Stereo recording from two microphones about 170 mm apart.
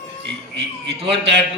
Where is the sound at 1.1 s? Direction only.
85° right.